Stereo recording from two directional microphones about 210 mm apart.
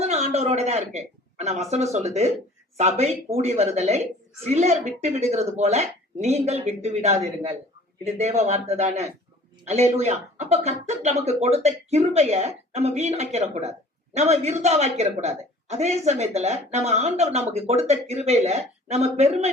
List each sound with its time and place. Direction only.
0.0 s speech: 30° right (ahead or behind)